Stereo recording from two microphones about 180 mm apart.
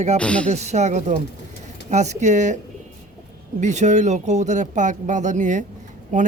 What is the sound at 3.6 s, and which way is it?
A man's voice, 40° right (ahead or behind).